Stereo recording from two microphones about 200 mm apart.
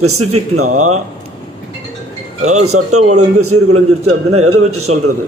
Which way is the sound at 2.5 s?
90° right.